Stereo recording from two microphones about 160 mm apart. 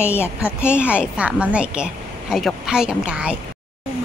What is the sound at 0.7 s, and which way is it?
A woman's voice, 5° right (ahead or behind).